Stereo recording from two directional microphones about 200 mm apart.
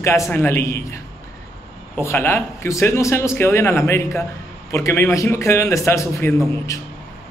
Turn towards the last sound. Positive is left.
turn(degrees=15)  # may be behind; listen again after turning